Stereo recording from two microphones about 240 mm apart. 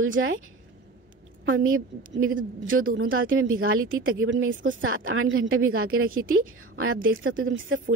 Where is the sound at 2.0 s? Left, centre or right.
Right.